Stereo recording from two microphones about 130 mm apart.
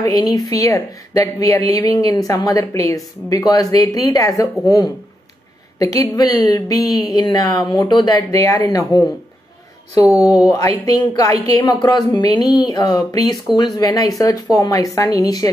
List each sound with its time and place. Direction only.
0.0 s speech: 30° left (ahead or behind)
10.1 s speech: 30° left (ahead or behind)